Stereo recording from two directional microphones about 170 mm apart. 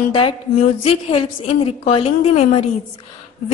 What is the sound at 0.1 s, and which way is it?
Speech, 30° left (ahead or behind).